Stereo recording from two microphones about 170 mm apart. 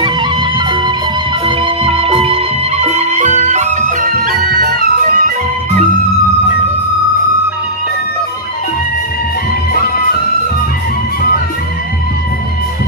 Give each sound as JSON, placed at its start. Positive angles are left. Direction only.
{"t": 0.0, "sound": "music", "side_deg": -25}